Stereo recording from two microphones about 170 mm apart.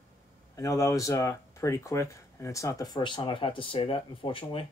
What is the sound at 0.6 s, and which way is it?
Speech, 20° left (ahead or behind).